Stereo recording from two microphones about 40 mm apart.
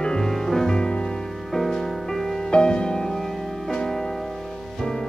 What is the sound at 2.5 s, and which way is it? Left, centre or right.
Music, left.